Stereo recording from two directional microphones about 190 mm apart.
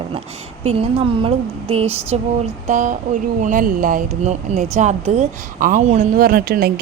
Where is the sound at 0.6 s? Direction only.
35° right (ahead or behind).